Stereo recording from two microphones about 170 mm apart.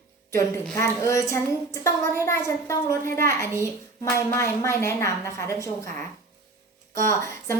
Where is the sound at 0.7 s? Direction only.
15° left (ahead or behind).